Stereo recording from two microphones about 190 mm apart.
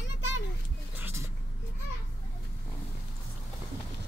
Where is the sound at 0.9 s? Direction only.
15° right (ahead or behind).